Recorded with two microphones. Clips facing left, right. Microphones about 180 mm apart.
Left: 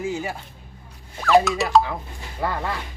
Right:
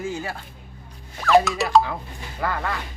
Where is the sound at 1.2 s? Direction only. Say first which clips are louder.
Even; centre (ahead or behind).